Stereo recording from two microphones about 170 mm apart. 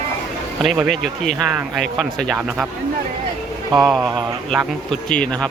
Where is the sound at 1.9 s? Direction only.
Centre (ahead or behind).